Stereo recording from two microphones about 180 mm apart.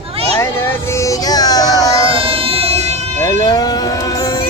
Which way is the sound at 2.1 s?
30° right (ahead or behind).